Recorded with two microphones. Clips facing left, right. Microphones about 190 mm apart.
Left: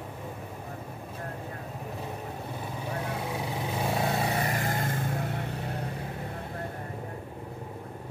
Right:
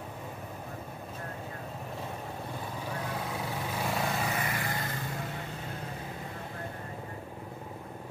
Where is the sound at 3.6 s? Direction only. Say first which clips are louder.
Left 4 dB; 20° left (ahead or behind); by 5.2 s 50° left (ahead or behind).